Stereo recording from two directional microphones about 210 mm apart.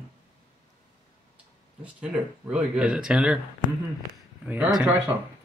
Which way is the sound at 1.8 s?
5° right (ahead or behind).